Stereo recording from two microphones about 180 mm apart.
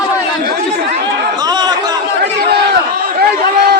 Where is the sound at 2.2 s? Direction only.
65° right (ahead or behind).